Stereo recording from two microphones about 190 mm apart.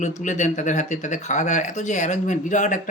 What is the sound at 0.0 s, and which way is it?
Speech, 40° left (ahead or behind).